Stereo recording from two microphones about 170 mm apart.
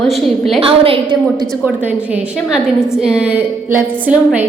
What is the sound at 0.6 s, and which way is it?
Speech, 35° right (ahead or behind).